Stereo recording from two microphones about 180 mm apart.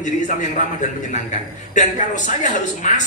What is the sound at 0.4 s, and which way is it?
Speech, 45° left (ahead or behind).